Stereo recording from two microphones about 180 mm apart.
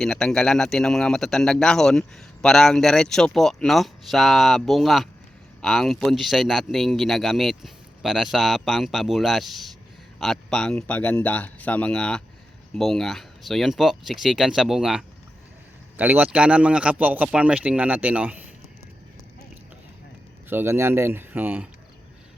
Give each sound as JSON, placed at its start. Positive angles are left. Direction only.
{"t": 0.0, "sound": "speech", "side_deg": 5}
{"t": 20.5, "sound": "speech", "side_deg": -10}